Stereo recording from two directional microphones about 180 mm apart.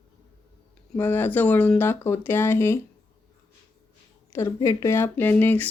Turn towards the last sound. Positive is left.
turn(degrees=10)  # may be behind; listen again after turning